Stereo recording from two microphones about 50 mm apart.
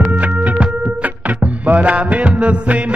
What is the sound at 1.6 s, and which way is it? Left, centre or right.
Mantra, right.